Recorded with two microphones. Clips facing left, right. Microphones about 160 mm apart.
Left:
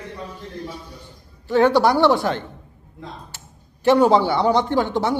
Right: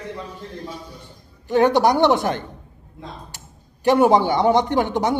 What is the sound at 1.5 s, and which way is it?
Speech, 15° right (ahead or behind).